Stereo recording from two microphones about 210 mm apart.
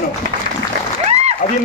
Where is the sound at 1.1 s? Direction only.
30° right (ahead or behind).